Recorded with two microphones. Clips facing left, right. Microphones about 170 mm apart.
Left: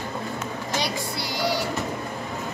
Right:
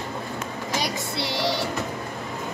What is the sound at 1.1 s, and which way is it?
Music, 25° right (ahead or behind).